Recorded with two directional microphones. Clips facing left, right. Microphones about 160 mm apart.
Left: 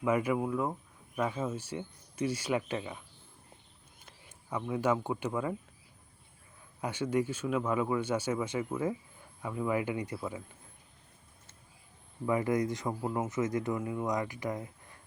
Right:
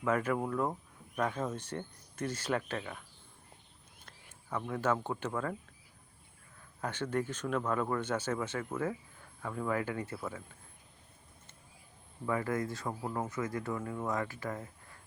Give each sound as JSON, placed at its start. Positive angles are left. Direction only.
{"t": 0.0, "sound": "speech", "side_deg": 10}
{"t": 4.0, "sound": "speech", "side_deg": 10}
{"t": 6.8, "sound": "speech", "side_deg": 10}
{"t": 12.2, "sound": "speech", "side_deg": 15}